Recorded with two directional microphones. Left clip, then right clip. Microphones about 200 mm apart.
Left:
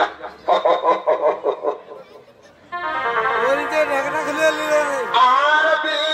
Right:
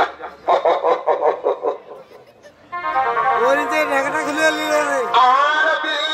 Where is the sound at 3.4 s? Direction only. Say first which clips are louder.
Right 1 dB; 35° right (ahead or behind).